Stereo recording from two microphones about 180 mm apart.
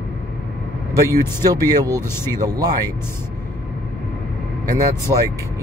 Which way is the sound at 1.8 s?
15° left (ahead or behind).